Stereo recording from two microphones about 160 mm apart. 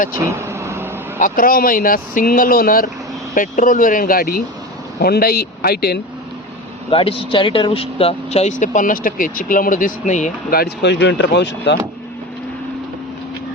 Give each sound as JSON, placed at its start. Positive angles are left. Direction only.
{"t": 0.2, "sound": "vehicle", "side_deg": -20}
{"t": 1.2, "sound": "speech", "side_deg": 60}
{"t": 4.9, "sound": "speech", "side_deg": 75}
{"t": 6.9, "sound": "speech", "side_deg": 35}